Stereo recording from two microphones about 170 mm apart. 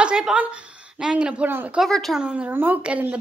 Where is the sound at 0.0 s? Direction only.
5° right (ahead or behind).